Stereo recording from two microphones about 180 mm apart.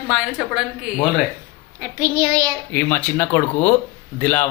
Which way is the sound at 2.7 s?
10° left (ahead or behind).